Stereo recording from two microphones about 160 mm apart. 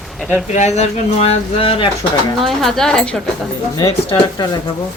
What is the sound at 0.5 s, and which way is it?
Speech, 45° left (ahead or behind).